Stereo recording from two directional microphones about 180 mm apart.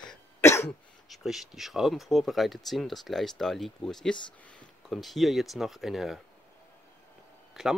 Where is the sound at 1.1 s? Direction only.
Centre (ahead or behind).